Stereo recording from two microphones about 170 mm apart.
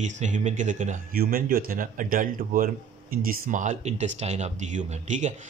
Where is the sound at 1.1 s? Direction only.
60° right (ahead or behind).